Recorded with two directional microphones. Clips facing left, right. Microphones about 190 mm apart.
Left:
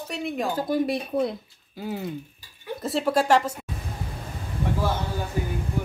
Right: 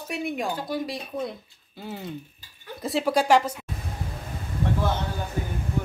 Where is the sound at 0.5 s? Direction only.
50° left (ahead or behind).